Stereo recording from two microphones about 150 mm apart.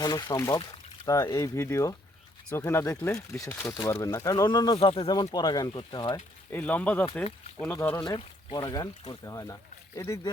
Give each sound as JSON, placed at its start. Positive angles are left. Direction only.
{"t": 0.0, "sound": "speech", "side_deg": 25}
{"t": 5.0, "sound": "speech", "side_deg": 25}
{"t": 6.5, "sound": "speech", "side_deg": 10}
{"t": 7.9, "sound": "speech", "side_deg": 25}